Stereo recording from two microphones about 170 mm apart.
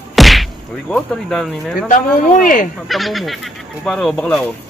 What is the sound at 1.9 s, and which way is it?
Speech, 50° left (ahead or behind).